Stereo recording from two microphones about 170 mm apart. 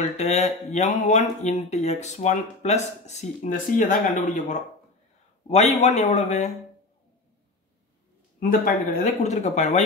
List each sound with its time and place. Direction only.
0.0 s speech: 40° left (ahead or behind)
5.8 s speech: 45° left (ahead or behind)
8.4 s speech: 55° left (ahead or behind)